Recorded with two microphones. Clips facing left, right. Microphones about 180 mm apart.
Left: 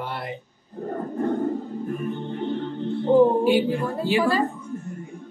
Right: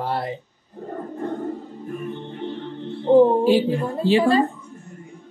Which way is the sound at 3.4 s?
30° right (ahead or behind).